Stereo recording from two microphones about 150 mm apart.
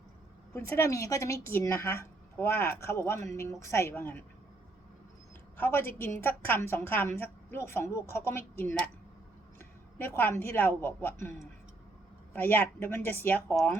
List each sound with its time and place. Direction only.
0.5 s a woman's voice: 20° left (ahead or behind)
5.5 s a woman's voice: 15° left (ahead or behind)